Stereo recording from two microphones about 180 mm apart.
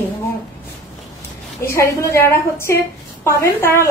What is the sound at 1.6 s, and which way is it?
A woman's voice, 15° left (ahead or behind).